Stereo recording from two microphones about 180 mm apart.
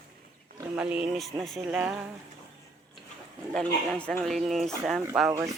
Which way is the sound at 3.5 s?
5° left (ahead or behind).